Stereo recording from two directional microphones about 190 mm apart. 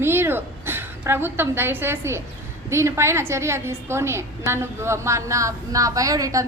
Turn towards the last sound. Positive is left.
turn(degrees=-15)  # may be behind; listen again after turning